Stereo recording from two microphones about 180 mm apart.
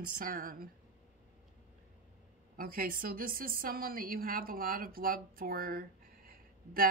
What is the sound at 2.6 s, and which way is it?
A woman's voice, 55° right (ahead or behind).